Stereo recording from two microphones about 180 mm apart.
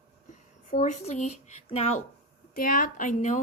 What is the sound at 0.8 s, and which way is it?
Speech, 40° left (ahead or behind).